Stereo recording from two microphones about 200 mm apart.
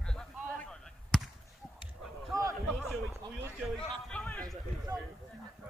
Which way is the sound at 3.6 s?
5° left (ahead or behind).